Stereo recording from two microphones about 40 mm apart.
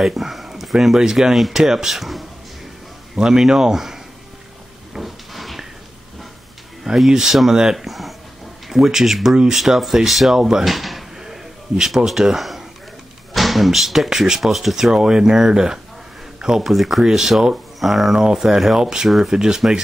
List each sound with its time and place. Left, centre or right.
0.0 s speech: centre
3.2 s speech: centre
4.9 s a sound: centre
6.8 s a sound: centre
7.1 s speech: centre
7.7 s speech: centre
9.8 s speech: centre
11.1 s a sound: centre
12.1 s speech: centre
14.9 s speech: centre
18.1 s speech: centre
19.0 s speech: centre
19.3 s speech: centre